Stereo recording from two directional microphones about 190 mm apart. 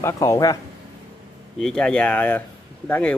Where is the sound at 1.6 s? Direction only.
5° left (ahead or behind).